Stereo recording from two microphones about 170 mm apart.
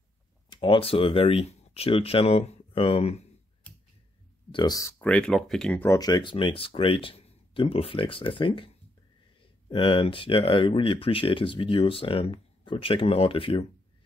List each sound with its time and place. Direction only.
0.5 s speech: 30° left (ahead or behind)
4.5 s speech: 25° left (ahead or behind); by 5.9 s 5° left (ahead or behind)
5.9 s speech: 20° left (ahead or behind)
9.7 s speech: 30° left (ahead or behind)